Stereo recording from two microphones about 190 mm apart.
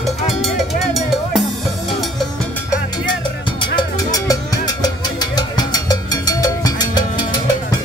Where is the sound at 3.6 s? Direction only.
20° left (ahead or behind).